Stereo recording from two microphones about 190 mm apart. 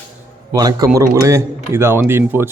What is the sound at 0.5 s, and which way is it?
A man's voice, 20° right (ahead or behind).